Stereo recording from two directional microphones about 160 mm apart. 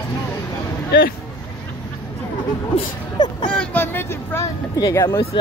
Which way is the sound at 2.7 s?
30° left (ahead or behind).